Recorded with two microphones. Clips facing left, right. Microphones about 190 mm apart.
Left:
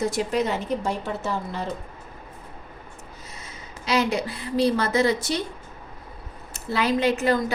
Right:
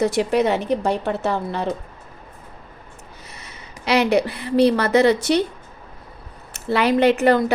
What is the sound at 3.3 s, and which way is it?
Speech, 70° right (ahead or behind).